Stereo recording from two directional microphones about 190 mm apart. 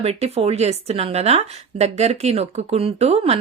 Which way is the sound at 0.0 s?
35° right (ahead or behind).